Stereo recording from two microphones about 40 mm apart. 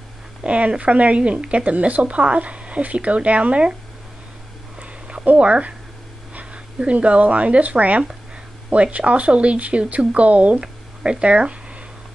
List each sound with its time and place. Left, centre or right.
0.4 s speech: right
5.4 s speech: right
10.6 s speech: right